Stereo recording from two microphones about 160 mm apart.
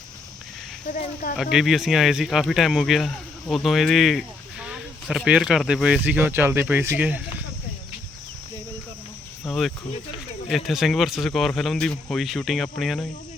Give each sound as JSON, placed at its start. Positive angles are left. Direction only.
{"t": 0.9, "sound": "speech", "side_deg": 55}
{"t": 1.4, "sound": "speech", "side_deg": 0}
{"t": 9.5, "sound": "speech", "side_deg": 0}